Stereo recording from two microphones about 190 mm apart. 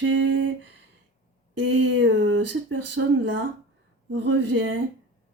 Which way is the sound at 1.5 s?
80° right.